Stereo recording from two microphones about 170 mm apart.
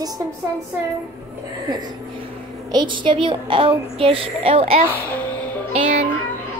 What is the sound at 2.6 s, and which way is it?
A woman's voice, 25° right (ahead or behind).